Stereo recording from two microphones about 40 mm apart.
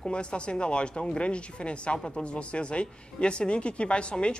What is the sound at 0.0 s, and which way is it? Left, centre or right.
Speech, left.